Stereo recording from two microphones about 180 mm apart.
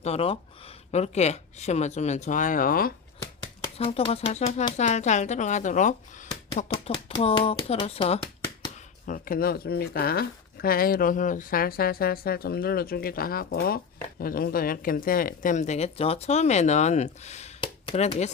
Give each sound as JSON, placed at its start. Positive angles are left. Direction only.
{"t": 0.0, "sound": "speech", "side_deg": 35}
{"t": 3.8, "sound": "speech", "side_deg": 30}